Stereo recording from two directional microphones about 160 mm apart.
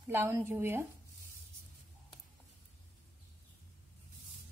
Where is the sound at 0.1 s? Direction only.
15° right (ahead or behind).